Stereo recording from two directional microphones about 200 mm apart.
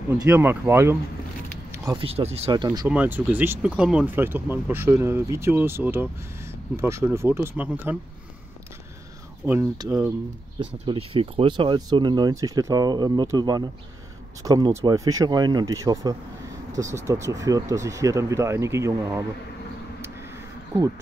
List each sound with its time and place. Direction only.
0.1 s speech: 10° right (ahead or behind)
1.7 s speech: 25° right (ahead or behind)
2.5 s speech: 20° right (ahead or behind)
2.9 s speech: 10° right (ahead or behind)
9.5 s speech: 15° right (ahead or behind)
10.7 s speech: 30° right (ahead or behind)
20.7 s speech: 15° right (ahead or behind)